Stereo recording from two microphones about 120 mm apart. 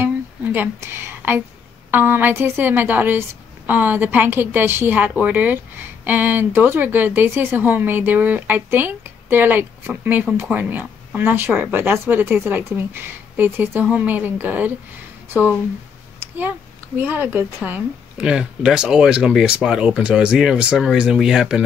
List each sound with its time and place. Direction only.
0.0 s a sound: 15° right (ahead or behind)
1.9 s a woman's voice: 15° right (ahead or behind)
16.2 s a woman's voice: 15° right (ahead or behind)